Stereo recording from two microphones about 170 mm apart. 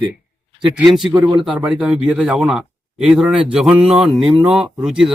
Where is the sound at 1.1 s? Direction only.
20° right (ahead or behind).